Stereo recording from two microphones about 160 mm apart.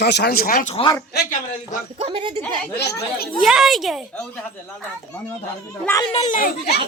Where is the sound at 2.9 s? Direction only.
75° left (ahead or behind).